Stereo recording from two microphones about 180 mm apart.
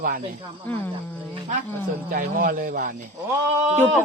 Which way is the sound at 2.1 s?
50° right (ahead or behind).